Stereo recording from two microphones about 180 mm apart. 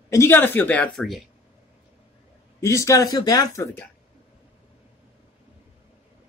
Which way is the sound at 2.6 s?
15° left (ahead or behind).